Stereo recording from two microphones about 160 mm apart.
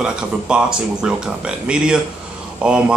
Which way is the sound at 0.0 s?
5° right (ahead or behind).